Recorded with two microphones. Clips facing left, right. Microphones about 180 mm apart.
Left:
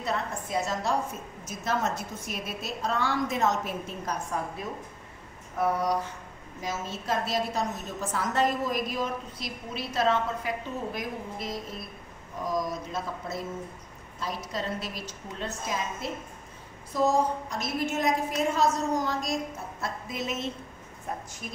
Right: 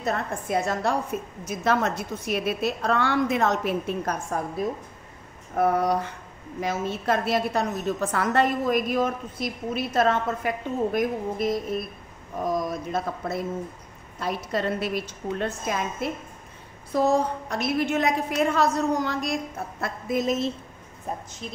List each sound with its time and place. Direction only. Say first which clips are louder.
0.0 s a woman's voice: right 3 dB; 55° right (ahead or behind)
1.5 s a woman's voice: right 5 dB; 70° right (ahead or behind)
4.6 s a woman's voice: right 8 dB; 40° right (ahead or behind)
5.6 s a woman's voice: right 4 dB; 55° right (ahead or behind)
19.8 s a woman's voice: right 8 dB; 45° right (ahead or behind)